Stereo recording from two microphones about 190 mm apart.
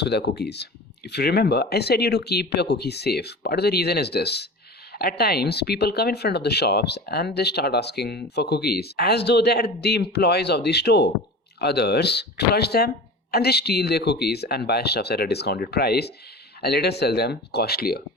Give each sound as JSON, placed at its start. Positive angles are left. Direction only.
{"t": 0.0, "sound": "speech", "side_deg": 60}